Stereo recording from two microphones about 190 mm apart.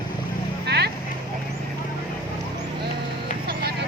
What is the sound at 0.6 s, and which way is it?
Vehicle, 60° right (ahead or behind).